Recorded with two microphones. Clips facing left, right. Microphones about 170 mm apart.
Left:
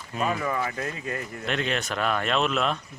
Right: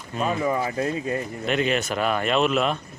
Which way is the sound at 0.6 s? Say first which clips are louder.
Right 5 dB; 30° right (ahead or behind).